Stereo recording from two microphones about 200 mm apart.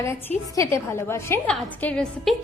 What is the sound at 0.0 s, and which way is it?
A woman's voice, 15° left (ahead or behind).